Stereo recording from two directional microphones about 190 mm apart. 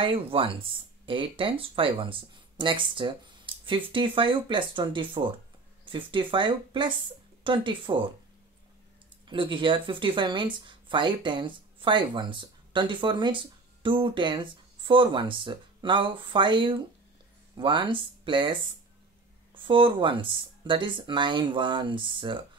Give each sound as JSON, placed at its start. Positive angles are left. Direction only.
{"t": 0.0, "sound": "speech", "side_deg": -30}
{"t": 9.3, "sound": "speech", "side_deg": -25}